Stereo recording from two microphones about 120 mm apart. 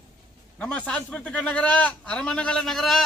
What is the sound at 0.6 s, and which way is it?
A man's voice, 10° left (ahead or behind).